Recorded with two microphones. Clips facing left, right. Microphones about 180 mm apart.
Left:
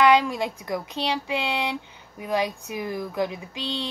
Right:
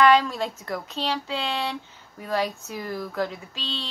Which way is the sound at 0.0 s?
15° left (ahead or behind).